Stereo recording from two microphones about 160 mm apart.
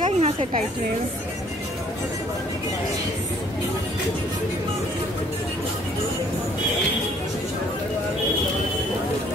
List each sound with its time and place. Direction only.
0.2 s a woman's voice: 40° right (ahead or behind)